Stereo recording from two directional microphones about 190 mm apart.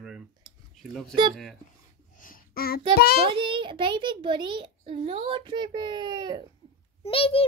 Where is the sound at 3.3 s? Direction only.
25° right (ahead or behind).